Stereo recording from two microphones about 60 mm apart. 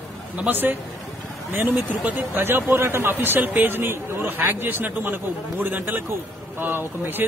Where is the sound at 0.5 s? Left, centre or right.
Right.